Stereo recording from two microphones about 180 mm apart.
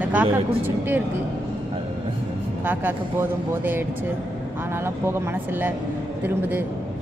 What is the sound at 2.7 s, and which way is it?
Speech, 10° right (ahead or behind).